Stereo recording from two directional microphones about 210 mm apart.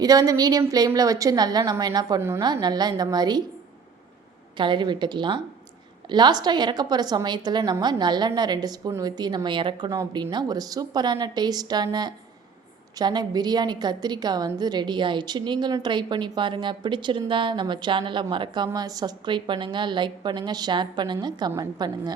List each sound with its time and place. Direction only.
0.0 s a woman's voice: 15° right (ahead or behind)
4.5 s a woman's voice: 20° right (ahead or behind)